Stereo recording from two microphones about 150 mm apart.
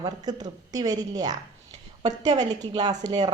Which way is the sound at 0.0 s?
25° right (ahead or behind).